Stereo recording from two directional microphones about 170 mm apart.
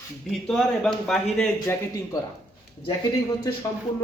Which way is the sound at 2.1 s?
20° left (ahead or behind).